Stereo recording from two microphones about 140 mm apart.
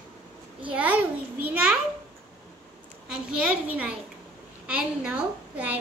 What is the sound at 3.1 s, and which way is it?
A child's voice, 10° right (ahead or behind).